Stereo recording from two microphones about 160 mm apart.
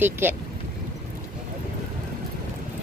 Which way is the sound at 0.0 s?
15° right (ahead or behind).